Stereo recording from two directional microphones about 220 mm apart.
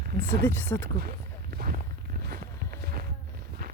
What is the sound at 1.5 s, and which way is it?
Walk, 45° right (ahead or behind).